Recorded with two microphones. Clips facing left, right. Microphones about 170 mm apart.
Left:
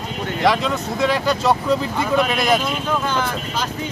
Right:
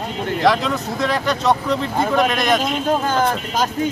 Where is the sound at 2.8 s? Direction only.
45° right (ahead or behind).